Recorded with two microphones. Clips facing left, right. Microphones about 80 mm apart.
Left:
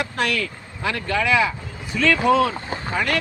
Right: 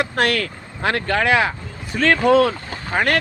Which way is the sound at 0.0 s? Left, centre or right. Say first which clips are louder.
Right 4 dB; right.